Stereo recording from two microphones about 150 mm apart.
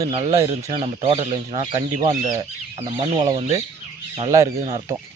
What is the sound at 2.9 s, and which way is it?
Chicken, 45° right (ahead or behind).